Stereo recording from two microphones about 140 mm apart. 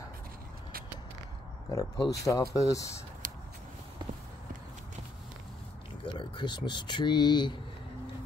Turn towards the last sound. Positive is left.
turn(degrees=30)  # may be behind; listen again after turning